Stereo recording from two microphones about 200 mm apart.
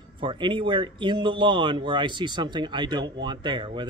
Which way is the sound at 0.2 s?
25° right (ahead or behind).